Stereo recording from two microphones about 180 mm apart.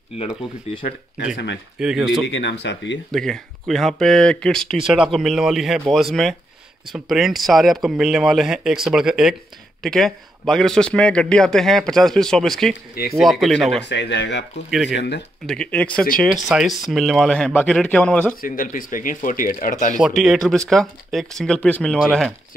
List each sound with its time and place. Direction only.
1.8 s speech: 5° right (ahead or behind)
2.2 s speech: 85° left
3.1 s speech: centre (ahead or behind)
13.8 s speech: 75° left (ahead or behind)
14.7 s speech: centre (ahead or behind)
15.0 s speech: 70° left (ahead or behind)
15.4 s speech: 5° left (ahead or behind)
18.4 s speech: 50° left (ahead or behind)
20.0 s speech: centre (ahead or behind)